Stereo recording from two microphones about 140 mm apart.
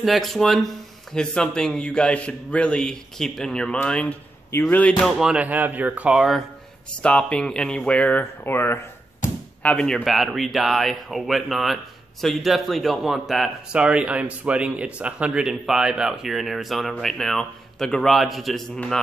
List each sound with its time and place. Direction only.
0.0 s a man's voice: centre (ahead or behind)
5.0 s speech: 5° right (ahead or behind)
7.0 s a man's voice: 5° left (ahead or behind)
9.2 s a sound: 65° left (ahead or behind)
9.6 s speech: 10° left (ahead or behind)